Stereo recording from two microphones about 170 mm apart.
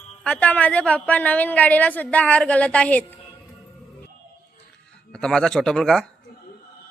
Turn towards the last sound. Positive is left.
turn(degrees=5)  # may be behind; listen again after turning